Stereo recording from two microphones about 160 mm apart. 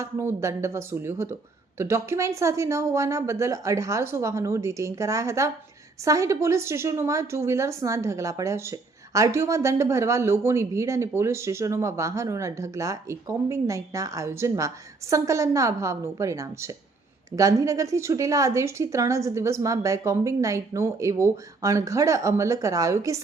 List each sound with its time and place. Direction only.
0.0 s a woman's voice: 15° right (ahead or behind)